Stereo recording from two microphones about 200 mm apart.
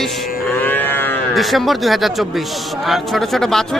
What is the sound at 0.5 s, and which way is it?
Livestock, 10° left (ahead or behind).